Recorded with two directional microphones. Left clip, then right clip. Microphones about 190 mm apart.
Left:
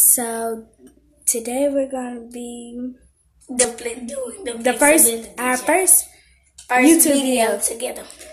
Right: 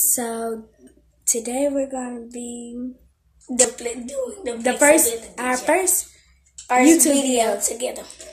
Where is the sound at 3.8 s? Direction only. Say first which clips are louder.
Even; 20° right (ahead or behind).